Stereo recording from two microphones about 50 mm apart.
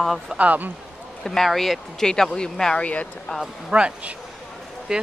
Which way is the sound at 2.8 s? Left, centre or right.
Left.